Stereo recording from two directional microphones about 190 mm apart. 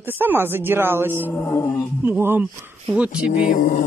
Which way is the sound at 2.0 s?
10° right (ahead or behind).